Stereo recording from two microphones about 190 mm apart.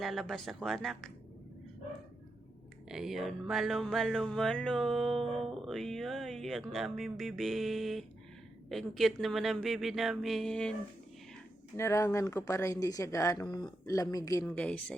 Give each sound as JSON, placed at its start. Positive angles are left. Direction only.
{"t": 0.0, "sound": "mantra", "side_deg": 0}
{"t": 2.9, "sound": "mantra", "side_deg": 0}
{"t": 11.8, "sound": "speech", "side_deg": 15}
{"t": 14.4, "sound": "speech", "side_deg": 5}